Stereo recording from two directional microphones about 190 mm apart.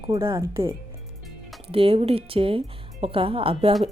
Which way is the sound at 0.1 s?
25° right (ahead or behind).